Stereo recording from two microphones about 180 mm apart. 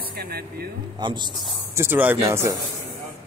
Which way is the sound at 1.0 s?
25° right (ahead or behind).